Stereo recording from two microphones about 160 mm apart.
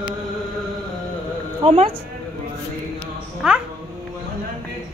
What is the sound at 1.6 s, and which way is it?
Speech, 35° right (ahead or behind).